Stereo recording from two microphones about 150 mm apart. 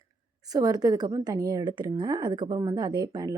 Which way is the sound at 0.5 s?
25° right (ahead or behind).